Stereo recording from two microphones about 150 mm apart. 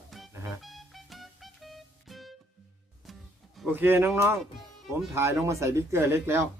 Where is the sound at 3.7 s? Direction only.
15° right (ahead or behind).